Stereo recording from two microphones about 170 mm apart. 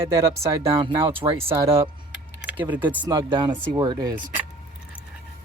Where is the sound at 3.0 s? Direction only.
25° right (ahead or behind).